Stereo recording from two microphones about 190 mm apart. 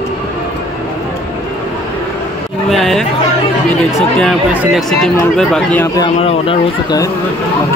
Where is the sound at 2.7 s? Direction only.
Centre (ahead or behind).